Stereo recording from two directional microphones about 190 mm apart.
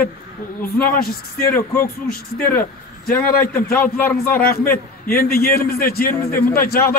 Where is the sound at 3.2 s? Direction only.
50° left (ahead or behind).